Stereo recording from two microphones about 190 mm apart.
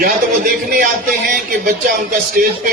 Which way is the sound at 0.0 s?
45° right (ahead or behind).